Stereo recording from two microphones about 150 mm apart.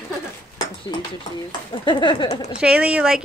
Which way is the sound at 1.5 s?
35° left (ahead or behind).